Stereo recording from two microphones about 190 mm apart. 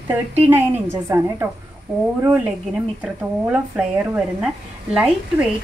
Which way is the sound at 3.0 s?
5° right (ahead or behind).